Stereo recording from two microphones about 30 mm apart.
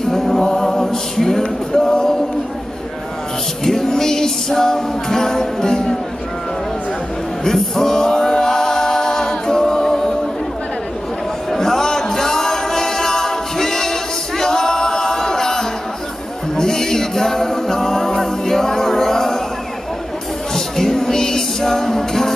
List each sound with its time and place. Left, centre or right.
0.1 s choir: centre
0.5 s a capella: centre
3.6 s music: centre
7.4 s music: centre
11.5 s music: centre
16.5 s a capella: centre
20.5 s music: centre